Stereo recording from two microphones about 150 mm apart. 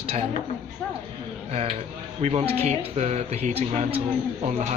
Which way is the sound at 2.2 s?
45° right (ahead or behind).